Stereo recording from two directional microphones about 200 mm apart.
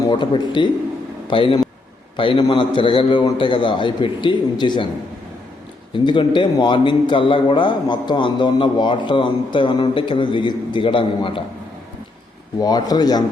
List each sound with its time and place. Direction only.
0.1 s a man's voice: 25° left (ahead or behind)
5.9 s a man's voice: 25° left (ahead or behind)
12.5 s a man's voice: 20° left (ahead or behind)